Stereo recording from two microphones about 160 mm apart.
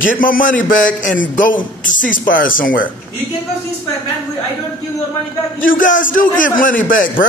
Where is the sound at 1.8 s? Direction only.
55° left (ahead or behind).